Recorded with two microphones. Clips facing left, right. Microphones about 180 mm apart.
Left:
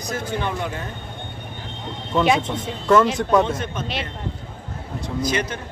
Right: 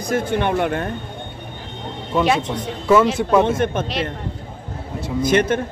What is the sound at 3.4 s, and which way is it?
Speech, 55° right (ahead or behind).